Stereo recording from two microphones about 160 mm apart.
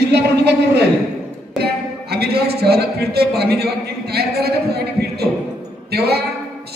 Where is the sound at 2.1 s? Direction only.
85° right.